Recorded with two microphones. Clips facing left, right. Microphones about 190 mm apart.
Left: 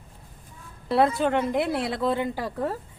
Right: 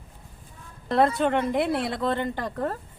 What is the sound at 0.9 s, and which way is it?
A woman's voice, 5° left (ahead or behind).